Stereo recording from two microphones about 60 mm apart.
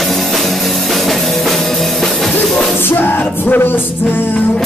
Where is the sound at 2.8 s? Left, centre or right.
Left.